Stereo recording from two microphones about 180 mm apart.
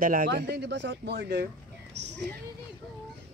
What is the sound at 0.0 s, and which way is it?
Speech, 50° right (ahead or behind).